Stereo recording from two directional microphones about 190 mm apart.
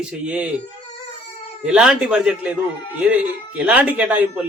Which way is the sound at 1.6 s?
5° right (ahead or behind).